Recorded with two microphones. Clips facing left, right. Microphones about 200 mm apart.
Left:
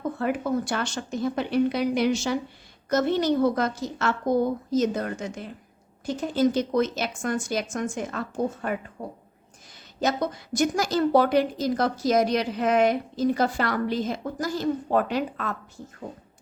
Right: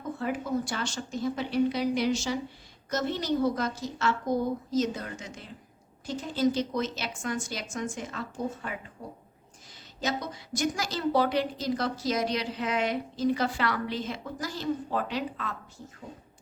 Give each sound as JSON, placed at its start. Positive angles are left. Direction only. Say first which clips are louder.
{"t": 0.2, "sound": "a woman's voice", "louder": "left 3 dB", "side_deg": 60}